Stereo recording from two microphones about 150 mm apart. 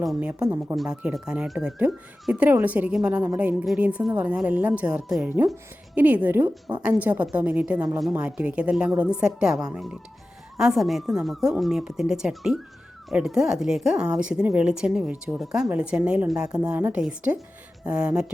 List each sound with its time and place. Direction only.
0.1 s speech: 5° right (ahead or behind)
0.3 s speech: 25° right (ahead or behind)
0.8 s speech: 5° right (ahead or behind)